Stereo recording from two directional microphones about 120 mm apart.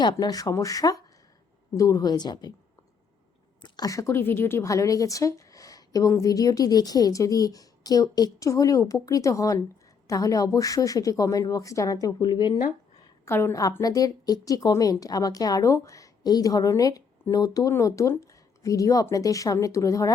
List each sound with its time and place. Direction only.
0.0 s a woman's voice: 35° left (ahead or behind)
3.6 s a woman's voice: 30° left (ahead or behind)
13.2 s a woman's voice: 20° left (ahead or behind)